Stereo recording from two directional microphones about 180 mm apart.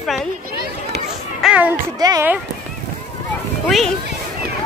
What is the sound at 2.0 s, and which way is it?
Speech, 20° right (ahead or behind).